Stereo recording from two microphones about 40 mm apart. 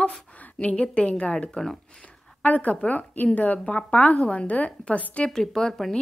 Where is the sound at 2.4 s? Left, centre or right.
Left.